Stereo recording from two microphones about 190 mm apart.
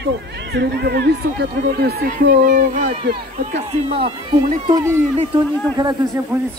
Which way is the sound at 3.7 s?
30° right (ahead or behind).